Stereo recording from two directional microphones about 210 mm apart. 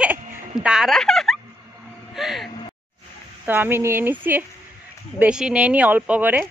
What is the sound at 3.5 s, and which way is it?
A woman's voice, 10° right (ahead or behind).